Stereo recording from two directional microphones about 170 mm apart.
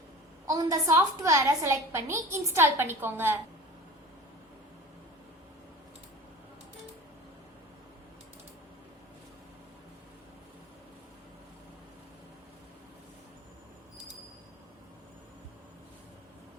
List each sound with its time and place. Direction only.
0.4 s a woman's voice: 20° right (ahead or behind)